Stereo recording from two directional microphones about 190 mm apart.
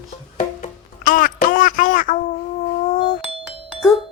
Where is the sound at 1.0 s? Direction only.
45° left (ahead or behind).